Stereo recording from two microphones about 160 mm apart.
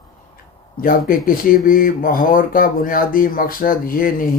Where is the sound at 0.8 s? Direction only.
60° left (ahead or behind).